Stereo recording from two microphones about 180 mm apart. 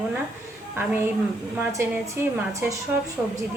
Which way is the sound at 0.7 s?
10° right (ahead or behind).